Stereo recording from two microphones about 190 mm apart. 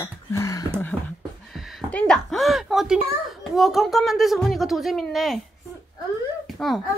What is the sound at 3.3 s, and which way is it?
Speech, centre (ahead or behind).